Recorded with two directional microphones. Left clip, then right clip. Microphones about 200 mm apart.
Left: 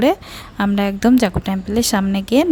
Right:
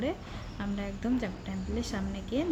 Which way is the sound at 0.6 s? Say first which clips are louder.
Left 19 dB; 50° left (ahead or behind).